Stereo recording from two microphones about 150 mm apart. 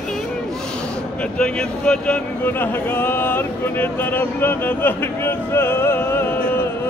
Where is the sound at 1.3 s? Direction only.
5° left (ahead or behind).